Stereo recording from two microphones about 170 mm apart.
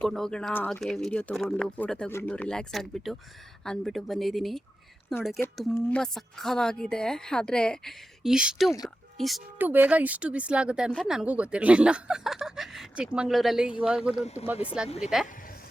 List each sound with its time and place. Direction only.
0.0 s speech: 5° left (ahead or behind)
5.7 s a woman's voice: 5° left (ahead or behind)
9.6 s speech: 10° right (ahead or behind)
14.8 s speech: 40° left (ahead or behind)